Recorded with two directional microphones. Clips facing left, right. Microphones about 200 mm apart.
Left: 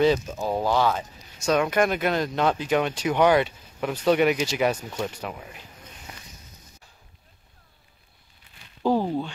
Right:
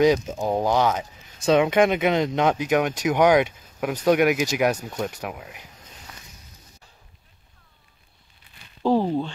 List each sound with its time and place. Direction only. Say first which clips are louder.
0.4 s speech: right 2 dB; 15° right (ahead or behind)
4.8 s speech: right 1 dB; centre (ahead or behind)
6.1 s a sound: left 2 dB; 25° left (ahead or behind)
8.8 s speech: right 2 dB; centre (ahead or behind)